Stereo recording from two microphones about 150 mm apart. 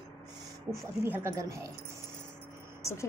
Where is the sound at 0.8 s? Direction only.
15° right (ahead or behind).